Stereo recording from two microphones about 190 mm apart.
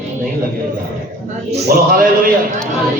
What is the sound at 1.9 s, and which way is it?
Speech, 50° right (ahead or behind).